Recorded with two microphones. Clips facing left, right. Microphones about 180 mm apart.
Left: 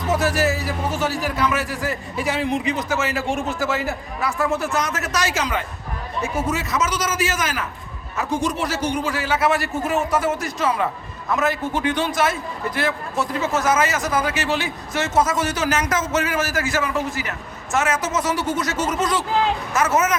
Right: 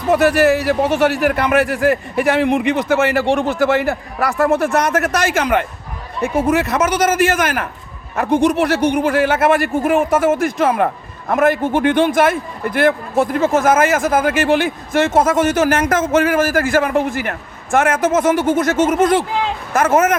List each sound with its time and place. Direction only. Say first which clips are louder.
0.1 s a man's voice: right 8 dB; 65° right (ahead or behind)